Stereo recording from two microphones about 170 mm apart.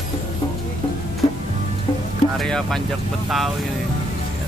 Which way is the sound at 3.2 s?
Centre (ahead or behind).